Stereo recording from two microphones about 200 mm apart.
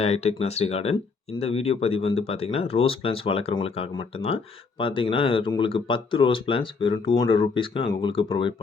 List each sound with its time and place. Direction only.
0.0 s speech: 30° left (ahead or behind)